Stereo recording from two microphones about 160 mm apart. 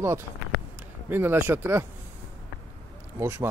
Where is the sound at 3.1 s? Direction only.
15° right (ahead or behind).